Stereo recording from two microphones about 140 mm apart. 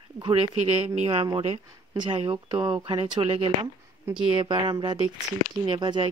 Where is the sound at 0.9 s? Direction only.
45° right (ahead or behind).